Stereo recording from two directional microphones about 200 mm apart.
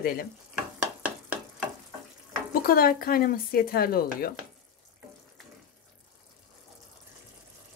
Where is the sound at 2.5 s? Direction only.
45° left (ahead or behind).